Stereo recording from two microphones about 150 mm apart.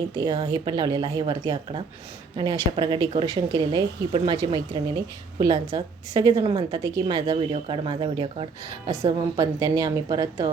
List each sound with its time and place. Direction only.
0.2 s a woman's voice: 30° right (ahead or behind)